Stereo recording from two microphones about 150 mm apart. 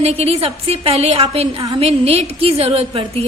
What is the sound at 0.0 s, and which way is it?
A woman's voice, 40° right (ahead or behind).